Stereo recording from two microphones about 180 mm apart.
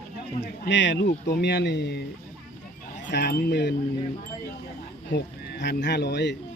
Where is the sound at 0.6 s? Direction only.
85° left; by 2.0 s 70° left (ahead or behind).